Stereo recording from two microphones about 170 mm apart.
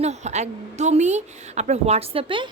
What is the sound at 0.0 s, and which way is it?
A woman's voice, 40° right (ahead or behind).